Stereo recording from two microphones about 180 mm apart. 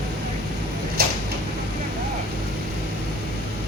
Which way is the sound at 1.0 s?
60° right (ahead or behind).